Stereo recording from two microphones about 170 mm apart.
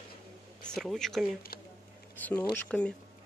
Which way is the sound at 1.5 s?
60° left (ahead or behind).